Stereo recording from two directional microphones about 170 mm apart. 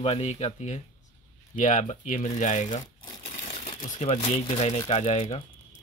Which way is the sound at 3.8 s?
45° left (ahead or behind).